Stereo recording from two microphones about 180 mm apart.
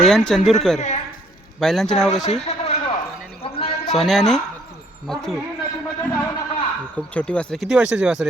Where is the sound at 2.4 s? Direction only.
35° left (ahead or behind).